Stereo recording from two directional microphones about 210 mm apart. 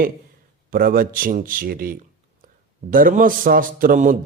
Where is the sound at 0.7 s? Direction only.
45° right (ahead or behind).